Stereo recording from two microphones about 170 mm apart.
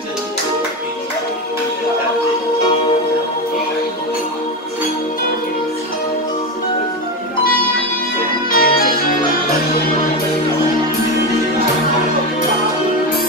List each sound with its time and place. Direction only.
8.5 s music: 60° left (ahead or behind)